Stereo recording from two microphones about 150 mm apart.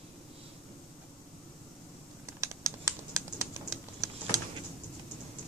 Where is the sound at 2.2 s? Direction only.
20° right (ahead or behind).